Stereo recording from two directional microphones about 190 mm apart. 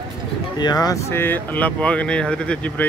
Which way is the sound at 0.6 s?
20° left (ahead or behind).